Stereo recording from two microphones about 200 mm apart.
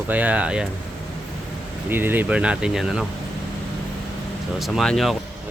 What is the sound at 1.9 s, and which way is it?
Speech, 10° right (ahead or behind).